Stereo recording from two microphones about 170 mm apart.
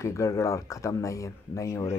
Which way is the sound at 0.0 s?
20° left (ahead or behind).